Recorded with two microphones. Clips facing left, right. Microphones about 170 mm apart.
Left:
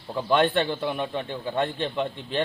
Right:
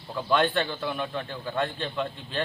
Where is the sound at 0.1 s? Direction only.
20° left (ahead or behind).